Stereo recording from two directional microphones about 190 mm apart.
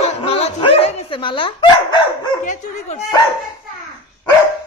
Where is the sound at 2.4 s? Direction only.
35° left (ahead or behind).